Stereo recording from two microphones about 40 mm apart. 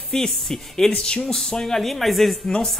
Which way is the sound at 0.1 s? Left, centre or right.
Centre.